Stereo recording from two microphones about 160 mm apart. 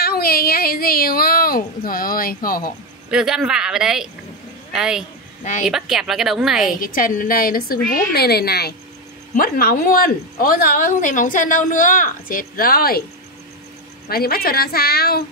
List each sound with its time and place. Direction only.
0.0 s speech: 70° left (ahead or behind)
3.1 s a woman's voice: 5° right (ahead or behind)
5.4 s a woman's voice: 50° left (ahead or behind)
5.7 s a woman's voice: 5° right (ahead or behind)
6.8 s speech: 60° left (ahead or behind)
7.9 s a woman's voice: 80° left
9.3 s speech: 65° left (ahead or behind)
14.0 s a woman's voice: 70° left (ahead or behind)